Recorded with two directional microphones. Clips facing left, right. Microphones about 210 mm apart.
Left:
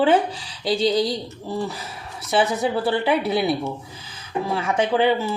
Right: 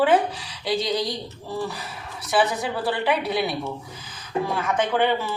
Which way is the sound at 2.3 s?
25° left (ahead or behind).